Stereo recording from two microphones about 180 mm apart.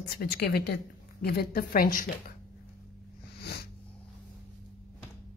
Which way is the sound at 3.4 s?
65° left (ahead or behind).